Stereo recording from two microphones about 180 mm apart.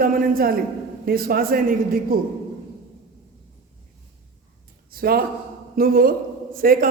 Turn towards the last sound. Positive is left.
turn(degrees=-55)  # may be behind; listen again after turning